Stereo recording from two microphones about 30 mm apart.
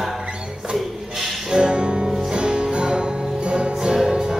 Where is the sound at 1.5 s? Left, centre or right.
Right.